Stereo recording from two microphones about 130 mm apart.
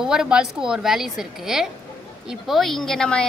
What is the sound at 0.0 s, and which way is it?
A woman's voice, 5° right (ahead or behind).